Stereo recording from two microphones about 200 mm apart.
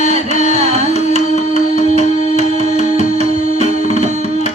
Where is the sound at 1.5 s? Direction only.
35° right (ahead or behind).